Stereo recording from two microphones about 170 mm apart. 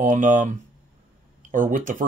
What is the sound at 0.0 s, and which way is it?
Speech, 50° right (ahead or behind).